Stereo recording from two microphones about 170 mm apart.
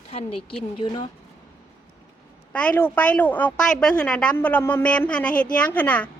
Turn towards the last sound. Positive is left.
turn(degrees=10)  # may be behind; listen again after turning